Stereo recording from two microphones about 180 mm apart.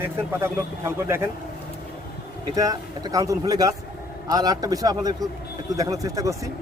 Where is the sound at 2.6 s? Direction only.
20° right (ahead or behind).